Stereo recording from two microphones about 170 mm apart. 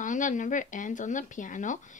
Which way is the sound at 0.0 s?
50° left (ahead or behind).